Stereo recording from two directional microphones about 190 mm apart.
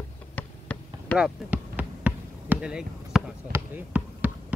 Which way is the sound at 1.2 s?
5° right (ahead or behind).